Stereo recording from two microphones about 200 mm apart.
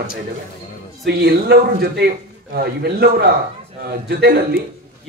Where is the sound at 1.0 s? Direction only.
50° right (ahead or behind).